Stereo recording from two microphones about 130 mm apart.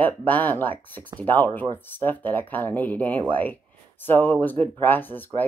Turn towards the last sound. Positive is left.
turn(degrees=15)  # may be behind; listen again after turning